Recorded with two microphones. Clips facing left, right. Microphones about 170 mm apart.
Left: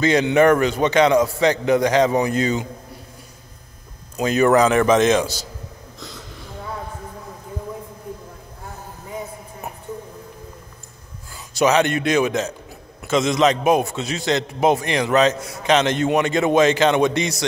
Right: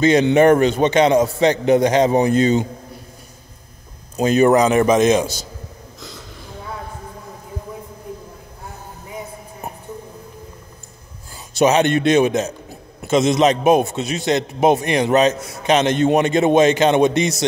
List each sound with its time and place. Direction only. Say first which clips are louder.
0.0 s a man's voice: right 3 dB; 20° right (ahead or behind)
4.2 s a man's voice: right 2 dB; 25° right (ahead or behind)
11.5 s a man's voice: right 2 dB; 25° right (ahead or behind)